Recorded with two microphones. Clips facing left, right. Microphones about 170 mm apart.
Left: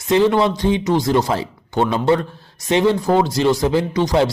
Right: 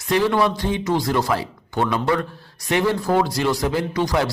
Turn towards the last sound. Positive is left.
turn(degrees=20)  # may be behind; listen again after turning